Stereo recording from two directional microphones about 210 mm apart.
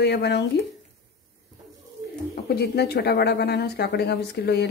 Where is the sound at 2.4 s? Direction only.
50° left (ahead or behind).